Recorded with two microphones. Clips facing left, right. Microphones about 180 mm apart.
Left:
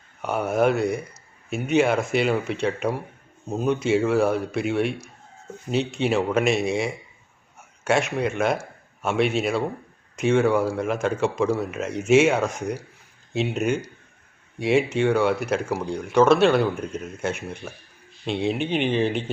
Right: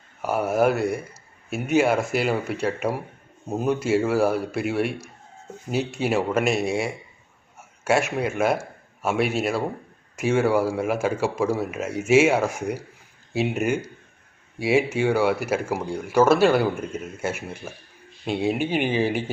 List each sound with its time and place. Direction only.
0.2 s a man's voice: 5° right (ahead or behind)